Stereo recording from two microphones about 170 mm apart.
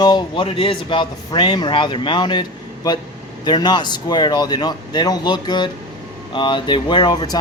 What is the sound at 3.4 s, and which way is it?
Speech, 25° left (ahead or behind).